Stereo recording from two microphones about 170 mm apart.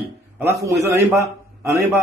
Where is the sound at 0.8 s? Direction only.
10° right (ahead or behind).